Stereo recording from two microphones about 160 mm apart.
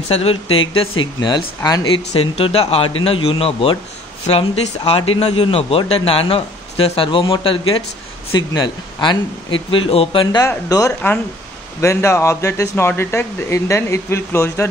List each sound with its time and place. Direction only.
0.1 s a man's voice: 40° left (ahead or behind)
2.1 s a man's voice: 35° left (ahead or behind)
10.2 s speech: 25° left (ahead or behind)